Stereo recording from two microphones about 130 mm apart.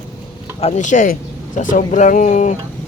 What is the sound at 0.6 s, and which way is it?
Speech, 60° left (ahead or behind).